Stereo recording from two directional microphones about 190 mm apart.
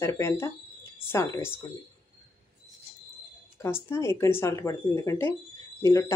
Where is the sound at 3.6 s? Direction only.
15° left (ahead or behind).